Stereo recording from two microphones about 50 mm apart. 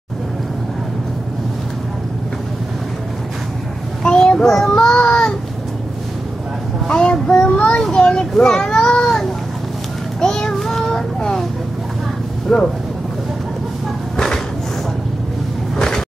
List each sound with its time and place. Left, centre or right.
4.0 s child singing: centre
4.7 s child singing: left
6.9 s a child's voice: centre
10.2 s child singing: centre
12.5 s speech: centre
14.1 s a sound: centre
15.7 s music: centre